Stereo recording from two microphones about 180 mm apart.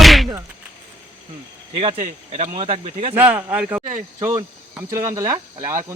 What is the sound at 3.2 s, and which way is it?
Speech, 10° right (ahead or behind).